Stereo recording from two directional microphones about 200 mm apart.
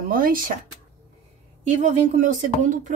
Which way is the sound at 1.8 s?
40° right (ahead or behind).